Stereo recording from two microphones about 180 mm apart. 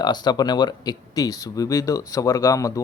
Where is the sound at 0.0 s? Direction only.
25° left (ahead or behind).